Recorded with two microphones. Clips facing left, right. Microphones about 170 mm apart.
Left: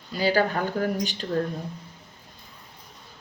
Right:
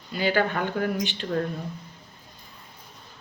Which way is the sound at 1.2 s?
30° left (ahead or behind).